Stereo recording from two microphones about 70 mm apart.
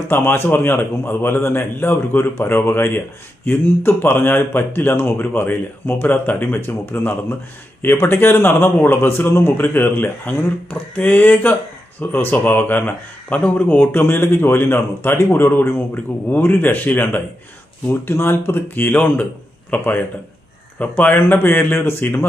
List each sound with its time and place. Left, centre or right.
0.1 s speech: left